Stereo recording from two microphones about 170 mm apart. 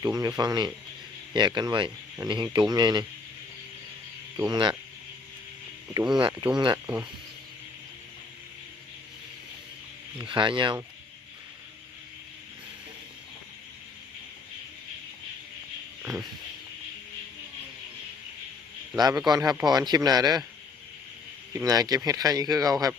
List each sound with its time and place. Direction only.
0.0 s speech: 20° right (ahead or behind)
4.4 s speech: 25° right (ahead or behind)
6.5 s speech: 25° right (ahead or behind)
6.8 s speech: 5° right (ahead or behind)
10.2 s speech: 30° right (ahead or behind)
16.0 s a sound: 5° right (ahead or behind)
18.9 s speech: 25° right (ahead or behind)
21.5 s speech: 20° right (ahead or behind)